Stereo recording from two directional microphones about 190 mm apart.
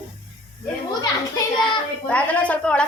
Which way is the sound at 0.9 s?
20° left (ahead or behind).